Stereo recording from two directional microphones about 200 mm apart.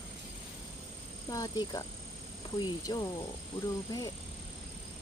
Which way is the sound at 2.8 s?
20° left (ahead or behind).